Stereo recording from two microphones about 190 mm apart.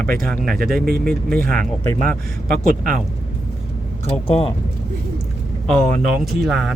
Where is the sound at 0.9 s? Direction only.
55° right (ahead or behind).